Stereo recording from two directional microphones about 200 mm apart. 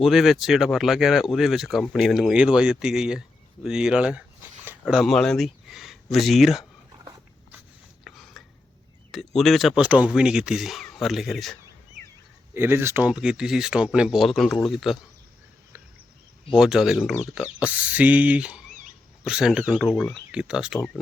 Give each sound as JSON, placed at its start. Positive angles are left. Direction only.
{"t": 0.0, "sound": "speech", "side_deg": 0}
{"t": 8.0, "sound": "a sound", "side_deg": 0}
{"t": 9.1, "sound": "speech", "side_deg": 0}
{"t": 12.5, "sound": "speech", "side_deg": -10}
{"t": 16.6, "sound": "speech", "side_deg": -5}
{"t": 18.7, "sound": "dog", "side_deg": -40}
{"t": 19.2, "sound": "speech", "side_deg": -5}
{"t": 20.7, "sound": "speech", "side_deg": 10}